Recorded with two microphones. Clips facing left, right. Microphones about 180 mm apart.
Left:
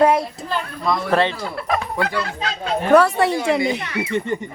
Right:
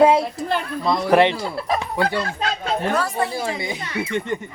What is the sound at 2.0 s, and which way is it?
Speech, 30° right (ahead or behind).